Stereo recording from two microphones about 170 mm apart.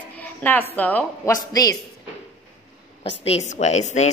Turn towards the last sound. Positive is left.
turn(degrees=40)  # may be behind; listen again after turning